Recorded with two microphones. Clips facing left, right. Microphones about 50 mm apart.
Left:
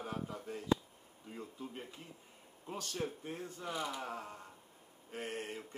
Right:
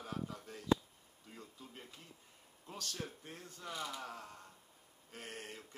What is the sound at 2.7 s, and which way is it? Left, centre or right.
Speech, centre.